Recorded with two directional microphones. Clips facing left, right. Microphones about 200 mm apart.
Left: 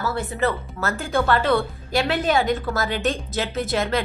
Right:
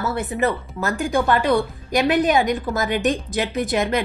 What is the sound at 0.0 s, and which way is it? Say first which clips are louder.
Speech: right 2 dB; 20° right (ahead or behind).